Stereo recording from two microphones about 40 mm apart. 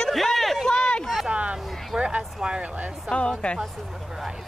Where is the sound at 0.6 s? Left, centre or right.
Centre.